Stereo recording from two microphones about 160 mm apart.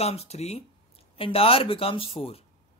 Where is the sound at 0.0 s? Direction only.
40° left (ahead or behind).